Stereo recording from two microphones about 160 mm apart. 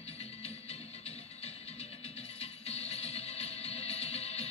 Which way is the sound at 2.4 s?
40° left (ahead or behind).